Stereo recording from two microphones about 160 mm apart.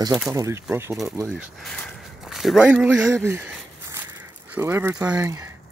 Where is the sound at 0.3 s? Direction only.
20° right (ahead or behind).